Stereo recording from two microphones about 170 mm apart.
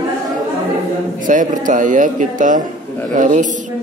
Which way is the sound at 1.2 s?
50° right (ahead or behind).